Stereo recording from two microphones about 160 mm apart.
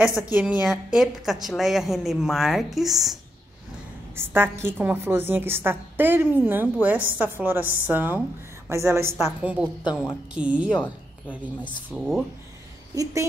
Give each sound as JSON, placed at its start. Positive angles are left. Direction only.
{"t": 0.3, "sound": "a woman's voice", "side_deg": -5}
{"t": 4.1, "sound": "a woman's voice", "side_deg": -15}
{"t": 11.6, "sound": "a woman's voice", "side_deg": 5}
{"t": 12.9, "sound": "a woman's voice", "side_deg": -20}